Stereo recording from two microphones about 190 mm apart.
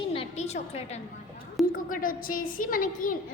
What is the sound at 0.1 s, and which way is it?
Music, 30° left (ahead or behind).